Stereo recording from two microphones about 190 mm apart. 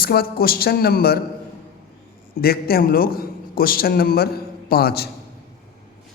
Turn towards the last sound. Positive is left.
turn(degrees=55)  # may be behind; listen again after turning